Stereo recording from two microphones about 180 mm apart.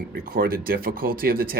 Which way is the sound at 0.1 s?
55° right (ahead or behind).